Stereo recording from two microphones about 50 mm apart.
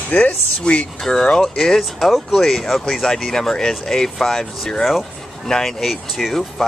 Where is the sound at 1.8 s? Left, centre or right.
Centre.